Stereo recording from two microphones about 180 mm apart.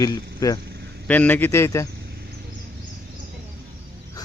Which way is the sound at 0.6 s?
65° right (ahead or behind).